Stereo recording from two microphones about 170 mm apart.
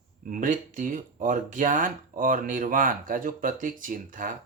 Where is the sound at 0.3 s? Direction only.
50° right (ahead or behind).